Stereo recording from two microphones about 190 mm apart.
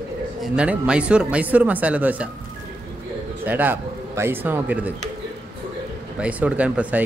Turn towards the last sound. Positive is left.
turn(degrees=-5)  # may be behind; listen again after turning